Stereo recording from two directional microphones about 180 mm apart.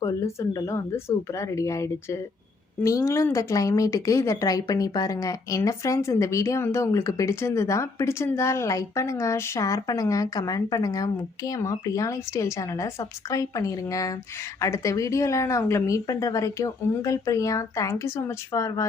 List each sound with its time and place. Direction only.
0.0 s speech: 20° left (ahead or behind)